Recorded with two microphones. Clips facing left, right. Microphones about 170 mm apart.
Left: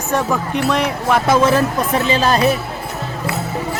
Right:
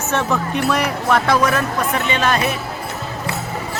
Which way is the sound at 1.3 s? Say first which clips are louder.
Left 3 dB; 25° left (ahead or behind).